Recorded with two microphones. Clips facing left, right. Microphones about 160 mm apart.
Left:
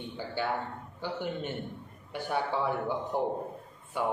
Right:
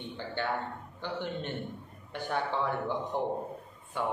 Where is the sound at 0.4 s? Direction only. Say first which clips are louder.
Left 1 dB; 10° left (ahead or behind).